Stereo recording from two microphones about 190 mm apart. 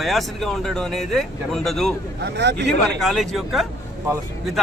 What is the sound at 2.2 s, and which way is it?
Speech, 60° right (ahead or behind).